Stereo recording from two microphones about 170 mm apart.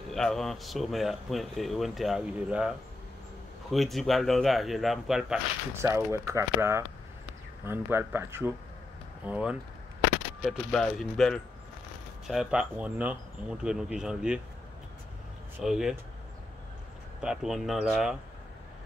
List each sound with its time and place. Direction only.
0.1 s speech: centre (ahead or behind)
3.7 s speech: centre (ahead or behind)
5.8 s speech: 15° right (ahead or behind)
10.7 s speech: centre (ahead or behind)
15.6 s speech: 5° right (ahead or behind)
17.2 s speech: 5° right (ahead or behind)